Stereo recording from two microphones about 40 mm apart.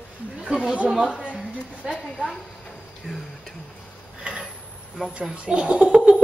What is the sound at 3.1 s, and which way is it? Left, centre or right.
Speech, right.